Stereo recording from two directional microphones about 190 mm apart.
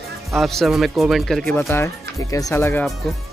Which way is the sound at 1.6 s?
15° left (ahead or behind).